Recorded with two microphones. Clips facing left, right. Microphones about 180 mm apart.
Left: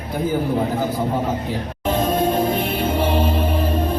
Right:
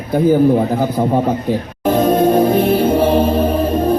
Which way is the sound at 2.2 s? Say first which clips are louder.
Right 7 dB; 50° right (ahead or behind).